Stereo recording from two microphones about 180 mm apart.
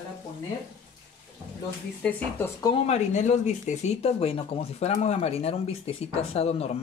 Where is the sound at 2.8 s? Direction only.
40° left (ahead or behind).